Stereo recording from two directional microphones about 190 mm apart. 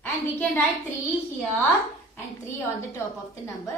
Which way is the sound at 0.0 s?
10° left (ahead or behind).